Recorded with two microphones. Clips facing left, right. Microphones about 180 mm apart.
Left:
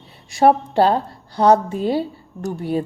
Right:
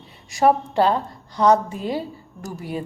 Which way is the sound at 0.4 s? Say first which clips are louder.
Left 3 dB; 30° left (ahead or behind).